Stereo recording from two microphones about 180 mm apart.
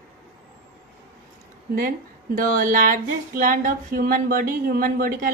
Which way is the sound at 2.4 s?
50° right (ahead or behind).